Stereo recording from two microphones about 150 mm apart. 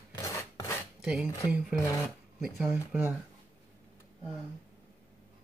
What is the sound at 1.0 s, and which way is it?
Speech, 5° right (ahead or behind).